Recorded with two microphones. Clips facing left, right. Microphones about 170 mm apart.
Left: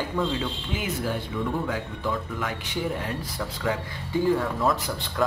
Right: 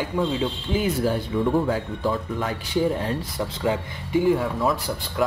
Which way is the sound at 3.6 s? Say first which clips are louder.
Right 3 dB; 15° right (ahead or behind).